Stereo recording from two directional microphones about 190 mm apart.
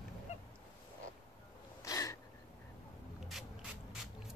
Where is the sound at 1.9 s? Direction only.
20° left (ahead or behind).